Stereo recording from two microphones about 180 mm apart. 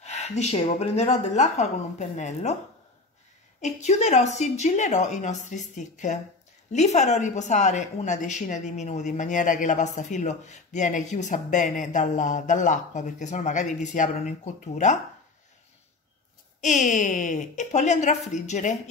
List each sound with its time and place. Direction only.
0.0 s speech: 40° left (ahead or behind)
3.6 s speech: 40° left (ahead or behind)
16.6 s speech: 45° left (ahead or behind)